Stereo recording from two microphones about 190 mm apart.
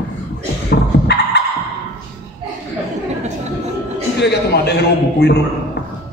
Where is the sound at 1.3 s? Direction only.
60° left (ahead or behind).